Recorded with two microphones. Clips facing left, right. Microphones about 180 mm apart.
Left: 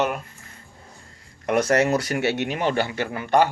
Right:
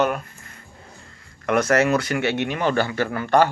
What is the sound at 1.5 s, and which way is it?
Speech, 35° left (ahead or behind).